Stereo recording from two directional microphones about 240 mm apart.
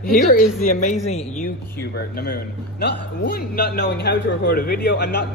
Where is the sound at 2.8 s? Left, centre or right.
Left.